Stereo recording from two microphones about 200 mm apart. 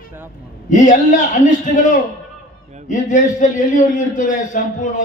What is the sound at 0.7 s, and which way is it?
A man's voice, 40° left (ahead or behind).